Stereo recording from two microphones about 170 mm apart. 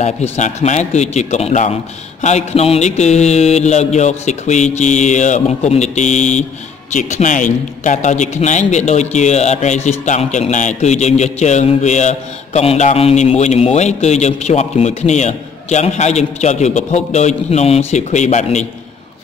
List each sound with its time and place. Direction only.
0.0 s a man's voice: 40° left (ahead or behind)
2.2 s mantra: 40° left (ahead or behind)
6.9 s a man's voice: 45° left (ahead or behind)